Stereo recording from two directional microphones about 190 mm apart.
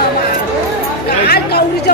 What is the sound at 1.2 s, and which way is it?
Speech, 55° left (ahead or behind).